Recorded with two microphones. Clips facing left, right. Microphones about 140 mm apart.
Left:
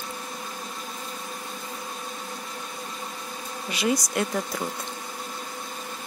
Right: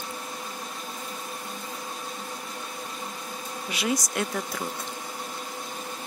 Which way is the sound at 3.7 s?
Centre (ahead or behind).